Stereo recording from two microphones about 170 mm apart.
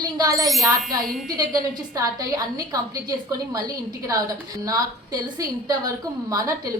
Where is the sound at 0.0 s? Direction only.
20° right (ahead or behind).